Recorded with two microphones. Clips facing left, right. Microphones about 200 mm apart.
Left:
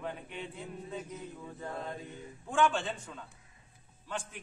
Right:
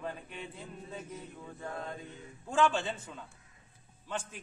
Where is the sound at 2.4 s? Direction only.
Centre (ahead or behind).